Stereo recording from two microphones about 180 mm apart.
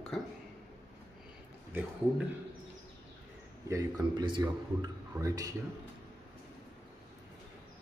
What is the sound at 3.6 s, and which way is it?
Speech, 20° right (ahead or behind).